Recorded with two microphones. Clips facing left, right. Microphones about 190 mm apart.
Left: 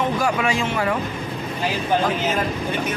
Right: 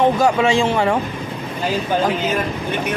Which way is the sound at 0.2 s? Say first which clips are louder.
Right 6 dB; 25° right (ahead or behind).